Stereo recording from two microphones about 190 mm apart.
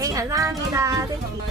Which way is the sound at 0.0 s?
20° right (ahead or behind).